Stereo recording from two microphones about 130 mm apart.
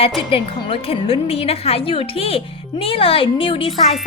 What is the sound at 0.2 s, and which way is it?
A woman's voice, 45° left (ahead or behind).